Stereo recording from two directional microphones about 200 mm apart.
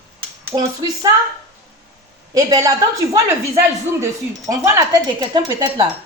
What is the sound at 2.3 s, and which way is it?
Speech, 15° right (ahead or behind).